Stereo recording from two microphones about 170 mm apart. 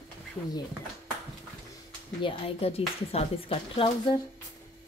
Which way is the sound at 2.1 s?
30° left (ahead or behind).